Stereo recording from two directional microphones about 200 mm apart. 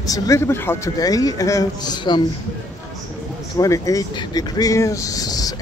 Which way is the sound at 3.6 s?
15° left (ahead or behind).